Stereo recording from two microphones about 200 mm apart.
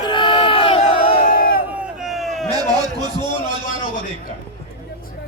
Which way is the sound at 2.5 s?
20° right (ahead or behind).